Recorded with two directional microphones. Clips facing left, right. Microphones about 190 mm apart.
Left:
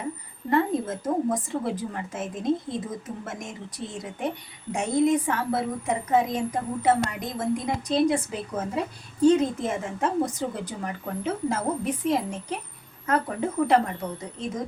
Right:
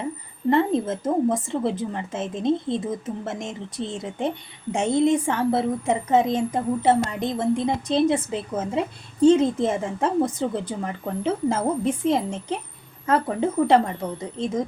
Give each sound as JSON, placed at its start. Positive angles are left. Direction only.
{"t": 0.5, "sound": "a woman's voice", "side_deg": -25}